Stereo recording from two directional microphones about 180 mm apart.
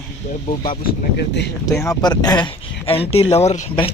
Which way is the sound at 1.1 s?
70° left (ahead or behind).